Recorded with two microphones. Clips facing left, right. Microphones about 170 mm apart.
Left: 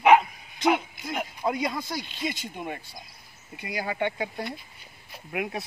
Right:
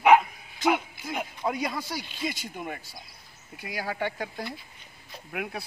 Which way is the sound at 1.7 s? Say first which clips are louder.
Left 1 dB; 5° right (ahead or behind).